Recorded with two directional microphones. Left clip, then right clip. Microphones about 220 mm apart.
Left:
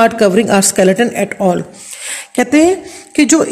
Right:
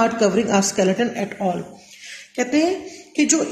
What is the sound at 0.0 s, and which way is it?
A woman's voice, 50° left (ahead or behind).